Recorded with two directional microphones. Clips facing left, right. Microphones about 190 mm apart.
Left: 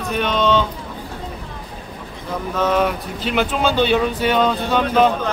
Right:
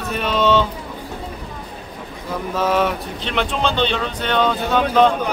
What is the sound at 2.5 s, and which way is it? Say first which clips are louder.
Speech: left 1 dB; 5° right (ahead or behind).